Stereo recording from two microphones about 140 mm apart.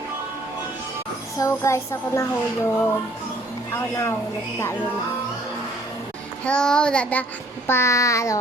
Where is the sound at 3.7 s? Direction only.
20° left (ahead or behind).